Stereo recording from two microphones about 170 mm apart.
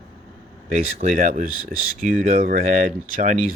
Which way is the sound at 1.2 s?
45° right (ahead or behind).